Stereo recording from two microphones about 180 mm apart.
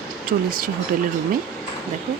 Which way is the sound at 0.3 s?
55° right (ahead or behind).